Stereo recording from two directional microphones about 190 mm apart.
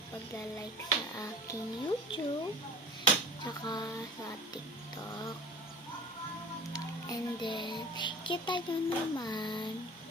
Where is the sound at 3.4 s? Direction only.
20° left (ahead or behind).